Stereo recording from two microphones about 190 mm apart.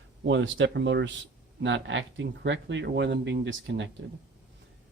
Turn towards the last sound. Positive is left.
turn(degrees=-70)  # may be behind; listen again after turning